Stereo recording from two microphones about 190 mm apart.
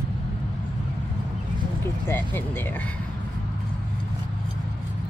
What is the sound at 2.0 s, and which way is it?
Speech, 10° left (ahead or behind).